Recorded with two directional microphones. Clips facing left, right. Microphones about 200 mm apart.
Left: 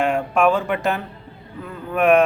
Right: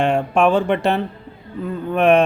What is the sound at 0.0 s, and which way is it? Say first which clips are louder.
Speech: right 2 dB; 30° right (ahead or behind).